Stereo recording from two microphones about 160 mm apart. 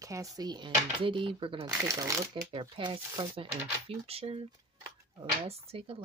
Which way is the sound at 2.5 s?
35° right (ahead or behind).